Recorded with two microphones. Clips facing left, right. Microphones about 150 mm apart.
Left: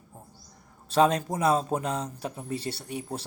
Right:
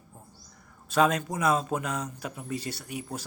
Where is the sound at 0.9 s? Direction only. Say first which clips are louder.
Left 2 dB; 30° left (ahead or behind).